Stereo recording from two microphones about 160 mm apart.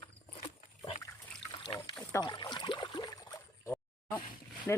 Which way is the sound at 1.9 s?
25° left (ahead or behind).